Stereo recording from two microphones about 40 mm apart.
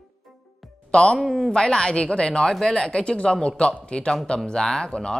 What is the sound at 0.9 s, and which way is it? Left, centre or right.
Speech, left.